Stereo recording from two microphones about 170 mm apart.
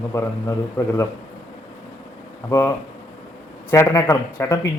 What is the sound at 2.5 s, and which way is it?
Speech, 20° left (ahead or behind).